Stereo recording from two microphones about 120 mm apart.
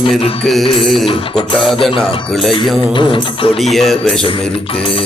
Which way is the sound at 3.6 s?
Centre (ahead or behind).